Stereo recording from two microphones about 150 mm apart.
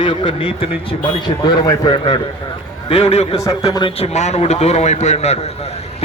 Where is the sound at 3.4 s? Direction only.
25° left (ahead or behind).